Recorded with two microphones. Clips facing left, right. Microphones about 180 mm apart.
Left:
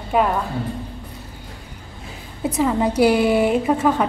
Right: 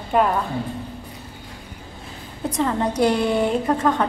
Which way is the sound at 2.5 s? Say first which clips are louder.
Left 3 dB; 5° left (ahead or behind).